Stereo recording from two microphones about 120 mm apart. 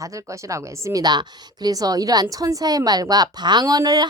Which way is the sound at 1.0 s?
35° right (ahead or behind).